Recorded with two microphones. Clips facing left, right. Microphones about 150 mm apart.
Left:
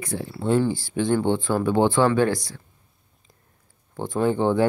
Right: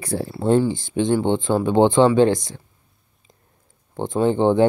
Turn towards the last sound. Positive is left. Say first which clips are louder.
# right 4 dB
turn(degrees=-20)  # may be behind; listen again after turning